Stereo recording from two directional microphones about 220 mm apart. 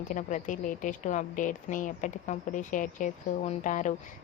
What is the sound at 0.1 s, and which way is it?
A woman's voice, 35° left (ahead or behind).